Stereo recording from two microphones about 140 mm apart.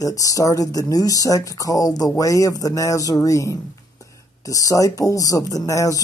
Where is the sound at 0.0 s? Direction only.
25° left (ahead or behind).